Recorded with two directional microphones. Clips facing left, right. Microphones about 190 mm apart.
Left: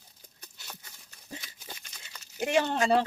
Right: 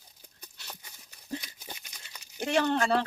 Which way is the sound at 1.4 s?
15° right (ahead or behind).